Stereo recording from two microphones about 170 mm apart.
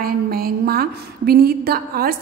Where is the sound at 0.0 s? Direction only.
60° right (ahead or behind).